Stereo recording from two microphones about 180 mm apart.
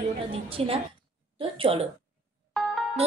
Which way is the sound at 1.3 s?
30° right (ahead or behind).